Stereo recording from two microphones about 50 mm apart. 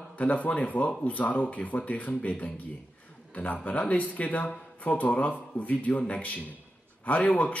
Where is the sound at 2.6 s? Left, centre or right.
Left.